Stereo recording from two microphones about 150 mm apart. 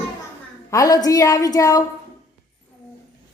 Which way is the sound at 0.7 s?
25° left (ahead or behind).